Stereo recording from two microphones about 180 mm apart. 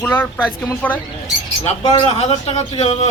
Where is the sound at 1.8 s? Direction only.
30° left (ahead or behind).